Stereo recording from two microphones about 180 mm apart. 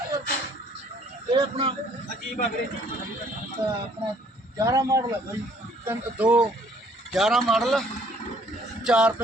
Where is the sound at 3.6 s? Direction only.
20° right (ahead or behind).